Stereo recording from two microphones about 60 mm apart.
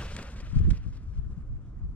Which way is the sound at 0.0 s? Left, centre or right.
Left.